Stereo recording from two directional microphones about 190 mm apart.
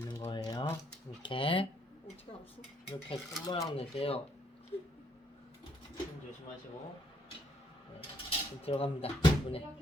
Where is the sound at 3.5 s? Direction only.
25° left (ahead or behind).